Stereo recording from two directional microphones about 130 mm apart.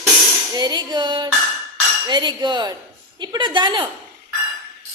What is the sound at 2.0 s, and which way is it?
A woman's voice, 35° right (ahead or behind).